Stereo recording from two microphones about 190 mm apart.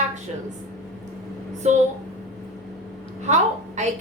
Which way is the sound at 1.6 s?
35° right (ahead or behind).